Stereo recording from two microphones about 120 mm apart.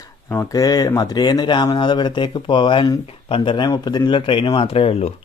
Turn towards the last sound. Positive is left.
turn(degrees=50)  # may be behind; listen again after turning